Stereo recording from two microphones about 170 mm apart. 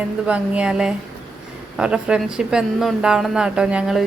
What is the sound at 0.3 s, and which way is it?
A woman's voice, 5° right (ahead or behind).